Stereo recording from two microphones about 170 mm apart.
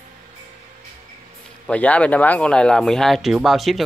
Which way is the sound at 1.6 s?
10° left (ahead or behind).